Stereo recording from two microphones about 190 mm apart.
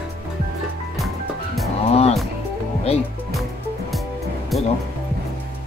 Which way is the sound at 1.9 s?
30° left (ahead or behind).